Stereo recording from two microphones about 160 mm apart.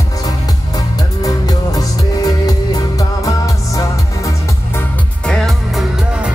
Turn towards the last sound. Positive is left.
turn(degrees=0)  # may be behind; listen again after turning